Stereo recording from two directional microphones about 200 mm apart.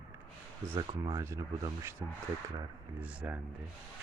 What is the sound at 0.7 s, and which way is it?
Speech, 25° right (ahead or behind).